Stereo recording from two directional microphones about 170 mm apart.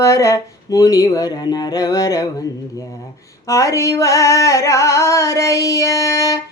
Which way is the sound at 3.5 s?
20° left (ahead or behind).